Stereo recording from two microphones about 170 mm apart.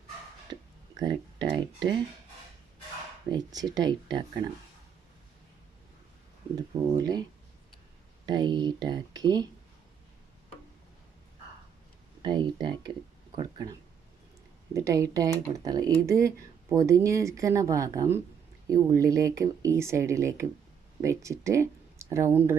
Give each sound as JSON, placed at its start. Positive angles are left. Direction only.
{"t": 0.9, "sound": "speech", "side_deg": -25}
{"t": 3.2, "sound": "speech", "side_deg": -25}
{"t": 6.6, "sound": "speech", "side_deg": -20}
{"t": 8.3, "sound": "speech", "side_deg": -25}
{"t": 12.2, "sound": "speech", "side_deg": -25}